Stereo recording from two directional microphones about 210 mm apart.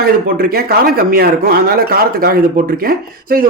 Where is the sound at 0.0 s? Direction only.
45° right (ahead or behind).